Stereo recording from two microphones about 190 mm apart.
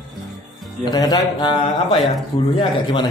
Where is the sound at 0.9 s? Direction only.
20° left (ahead or behind).